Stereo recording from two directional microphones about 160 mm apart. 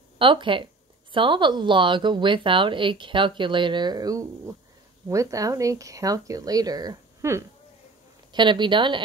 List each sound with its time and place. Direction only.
0.2 s a woman's voice: 30° right (ahead or behind)
8.3 s speech: 30° right (ahead or behind)